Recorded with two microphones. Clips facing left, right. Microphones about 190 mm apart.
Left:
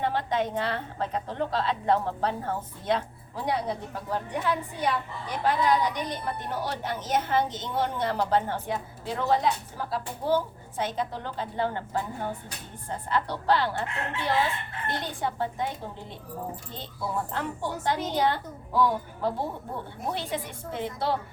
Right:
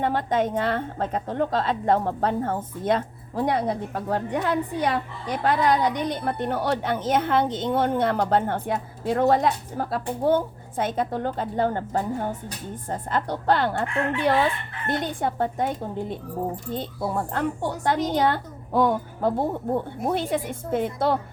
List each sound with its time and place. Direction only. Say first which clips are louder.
0.0 s a woman's voice: right 4 dB; 50° right (ahead or behind)
14.8 s a woman's voice: right 6 dB; 50° right (ahead or behind)